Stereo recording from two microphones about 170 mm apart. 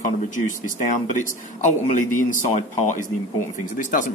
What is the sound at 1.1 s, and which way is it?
A man's voice, 45° left (ahead or behind).